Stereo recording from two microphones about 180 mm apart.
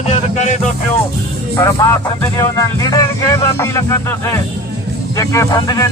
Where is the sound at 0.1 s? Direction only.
40° left (ahead or behind).